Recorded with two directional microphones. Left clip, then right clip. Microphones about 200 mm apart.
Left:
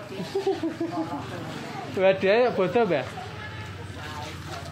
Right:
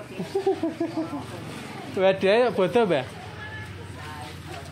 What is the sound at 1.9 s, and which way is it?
Speech, 20° right (ahead or behind).